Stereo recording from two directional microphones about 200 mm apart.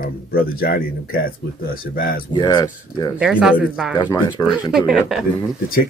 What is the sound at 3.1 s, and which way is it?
Speech, 5° right (ahead or behind).